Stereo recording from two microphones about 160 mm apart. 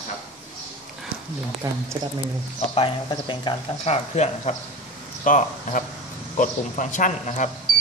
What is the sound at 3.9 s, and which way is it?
Speech, 45° left (ahead or behind).